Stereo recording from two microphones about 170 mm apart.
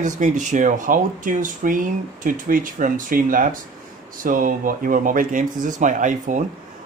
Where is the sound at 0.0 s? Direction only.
45° right (ahead or behind).